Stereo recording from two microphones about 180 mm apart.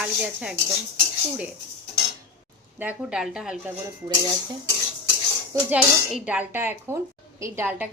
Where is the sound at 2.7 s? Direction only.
5° right (ahead or behind).